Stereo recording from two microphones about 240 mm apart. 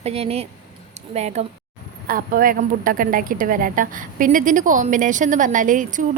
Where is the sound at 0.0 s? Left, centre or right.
Right.